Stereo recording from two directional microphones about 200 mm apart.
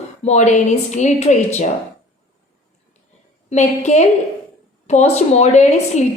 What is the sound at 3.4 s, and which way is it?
A woman's voice, 35° left (ahead or behind).